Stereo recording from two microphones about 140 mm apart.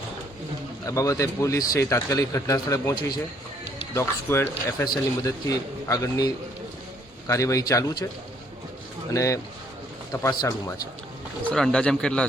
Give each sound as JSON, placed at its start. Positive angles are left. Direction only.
{"t": 0.9, "sound": "speech", "side_deg": 25}
{"t": 9.1, "sound": "speech", "side_deg": 25}
{"t": 11.4, "sound": "a man's voice", "side_deg": 5}